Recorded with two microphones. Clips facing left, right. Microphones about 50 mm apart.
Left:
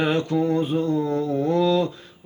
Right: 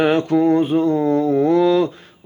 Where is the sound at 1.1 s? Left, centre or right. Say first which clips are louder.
Right 6 dB; right.